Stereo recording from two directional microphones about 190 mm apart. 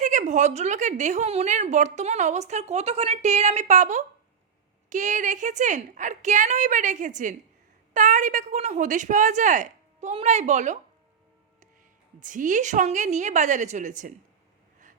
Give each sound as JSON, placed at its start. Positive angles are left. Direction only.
{"t": 0.0, "sound": "a woman's voice", "side_deg": -40}
{"t": 12.2, "sound": "a woman's voice", "side_deg": -45}